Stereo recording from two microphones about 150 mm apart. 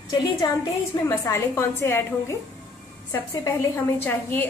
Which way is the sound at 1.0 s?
20° left (ahead or behind).